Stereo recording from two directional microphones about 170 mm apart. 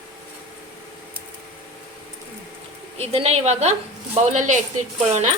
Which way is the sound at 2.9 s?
35° right (ahead or behind).